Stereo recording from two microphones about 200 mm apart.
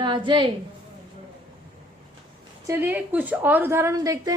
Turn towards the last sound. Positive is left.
turn(degrees=-15)  # may be behind; listen again after turning